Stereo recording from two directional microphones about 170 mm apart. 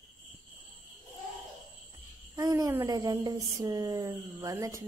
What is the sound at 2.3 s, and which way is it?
Speech, 20° right (ahead or behind).